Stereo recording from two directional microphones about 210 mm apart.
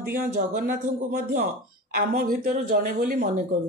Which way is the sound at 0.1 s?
40° right (ahead or behind).